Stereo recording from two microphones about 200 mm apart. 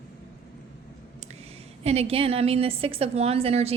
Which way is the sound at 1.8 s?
30° right (ahead or behind).